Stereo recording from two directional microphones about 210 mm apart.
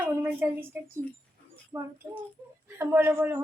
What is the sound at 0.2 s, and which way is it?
A woman's voice, 10° right (ahead or behind).